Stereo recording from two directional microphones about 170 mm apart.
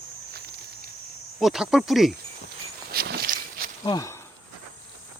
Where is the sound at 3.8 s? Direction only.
20° left (ahead or behind).